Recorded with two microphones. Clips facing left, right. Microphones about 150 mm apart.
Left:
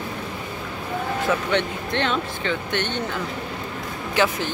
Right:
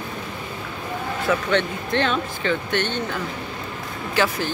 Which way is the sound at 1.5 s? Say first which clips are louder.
Right 1 dB; 20° left (ahead or behind).